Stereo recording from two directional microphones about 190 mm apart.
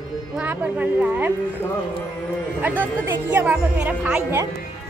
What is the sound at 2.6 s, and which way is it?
A woman's voice, 10° right (ahead or behind).